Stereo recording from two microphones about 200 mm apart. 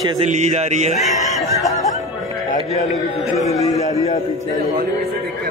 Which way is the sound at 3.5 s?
15° left (ahead or behind).